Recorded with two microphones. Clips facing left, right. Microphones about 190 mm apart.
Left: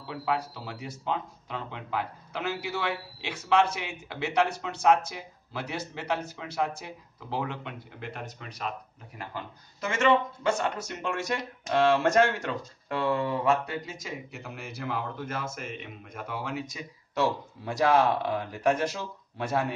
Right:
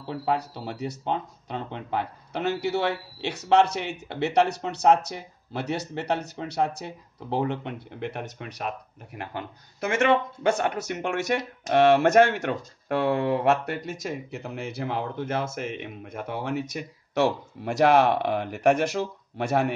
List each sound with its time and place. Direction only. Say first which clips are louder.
0.0 s speech: right 3 dB; 55° right (ahead or behind)